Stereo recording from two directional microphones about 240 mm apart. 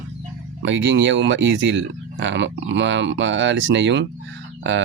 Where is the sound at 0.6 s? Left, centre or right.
Right.